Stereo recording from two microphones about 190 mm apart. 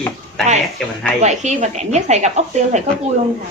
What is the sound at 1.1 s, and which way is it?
Speech, 35° right (ahead or behind).